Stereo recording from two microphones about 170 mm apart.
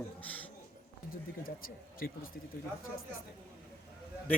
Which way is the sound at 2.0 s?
60° left (ahead or behind).